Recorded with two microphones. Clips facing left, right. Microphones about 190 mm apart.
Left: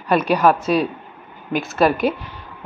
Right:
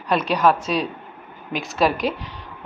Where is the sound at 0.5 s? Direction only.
55° left (ahead or behind).